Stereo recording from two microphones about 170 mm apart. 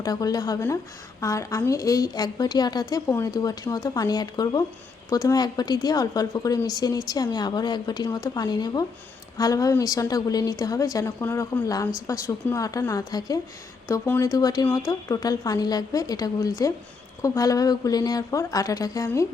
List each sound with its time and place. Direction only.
0.0 s speech: 20° left (ahead or behind)